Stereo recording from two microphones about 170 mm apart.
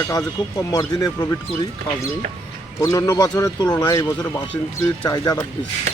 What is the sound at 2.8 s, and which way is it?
A man's voice, 20° left (ahead or behind).